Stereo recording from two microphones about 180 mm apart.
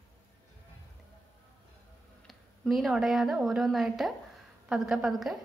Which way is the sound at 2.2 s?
Centre (ahead or behind).